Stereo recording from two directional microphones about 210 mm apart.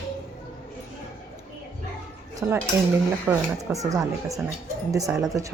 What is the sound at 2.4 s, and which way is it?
Speech, 10° right (ahead or behind).